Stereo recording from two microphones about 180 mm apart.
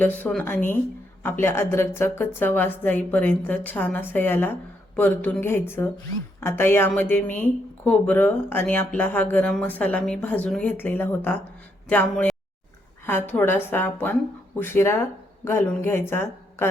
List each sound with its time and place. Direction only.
0.0 s a woman's voice: 10° left (ahead or behind)